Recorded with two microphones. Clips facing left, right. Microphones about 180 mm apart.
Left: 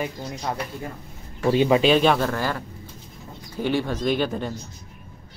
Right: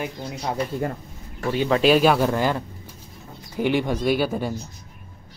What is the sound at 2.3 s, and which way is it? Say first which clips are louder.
Speech: right 4 dB; 20° right (ahead or behind).